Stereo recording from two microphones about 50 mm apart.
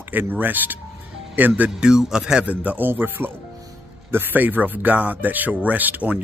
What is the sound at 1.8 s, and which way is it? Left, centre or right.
Speech, centre.